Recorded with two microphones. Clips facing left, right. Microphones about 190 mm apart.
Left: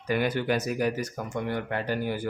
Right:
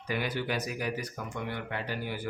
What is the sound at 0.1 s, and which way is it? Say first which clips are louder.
Speech: left 6 dB; 50° left (ahead or behind).